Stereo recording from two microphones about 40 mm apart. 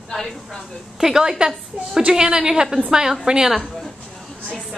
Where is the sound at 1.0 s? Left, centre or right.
Centre.